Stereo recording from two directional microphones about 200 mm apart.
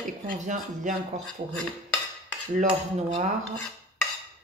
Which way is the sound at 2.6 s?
35° right (ahead or behind).